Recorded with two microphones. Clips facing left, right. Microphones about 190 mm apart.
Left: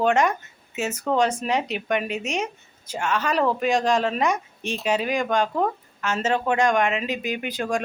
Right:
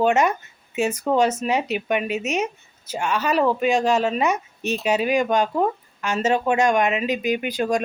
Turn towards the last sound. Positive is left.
turn(degrees=-15)  # may be behind; listen again after turning